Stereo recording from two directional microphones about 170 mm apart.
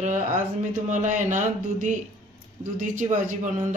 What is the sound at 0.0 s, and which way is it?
Speech, 45° right (ahead or behind).